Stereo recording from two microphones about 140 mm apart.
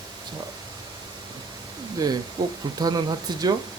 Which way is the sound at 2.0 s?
30° right (ahead or behind).